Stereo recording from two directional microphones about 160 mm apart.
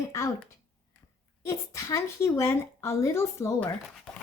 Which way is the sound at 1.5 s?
20° left (ahead or behind).